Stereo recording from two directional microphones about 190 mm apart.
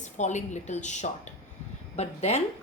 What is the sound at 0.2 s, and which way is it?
A woman's voice, 40° left (ahead or behind).